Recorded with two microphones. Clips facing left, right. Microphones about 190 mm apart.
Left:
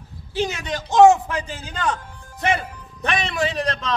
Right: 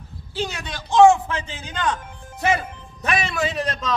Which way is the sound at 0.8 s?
40° left (ahead or behind).